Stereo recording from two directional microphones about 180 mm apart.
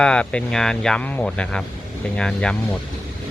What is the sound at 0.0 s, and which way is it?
Speech, 5° left (ahead or behind).